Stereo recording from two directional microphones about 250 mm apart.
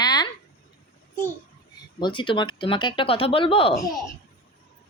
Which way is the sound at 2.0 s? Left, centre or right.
Centre.